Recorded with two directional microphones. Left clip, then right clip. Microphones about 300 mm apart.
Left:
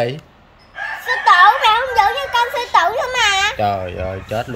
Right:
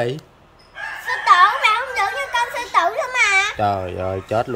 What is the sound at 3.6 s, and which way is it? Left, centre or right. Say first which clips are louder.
Speech: left 1 dB; centre.